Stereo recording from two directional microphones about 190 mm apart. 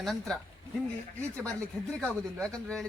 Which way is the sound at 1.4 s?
5° left (ahead or behind).